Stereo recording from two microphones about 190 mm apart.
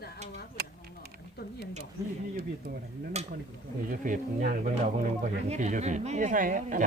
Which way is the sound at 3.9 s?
45° right (ahead or behind).